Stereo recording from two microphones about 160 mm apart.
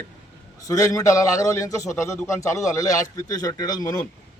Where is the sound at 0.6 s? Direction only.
20° left (ahead or behind).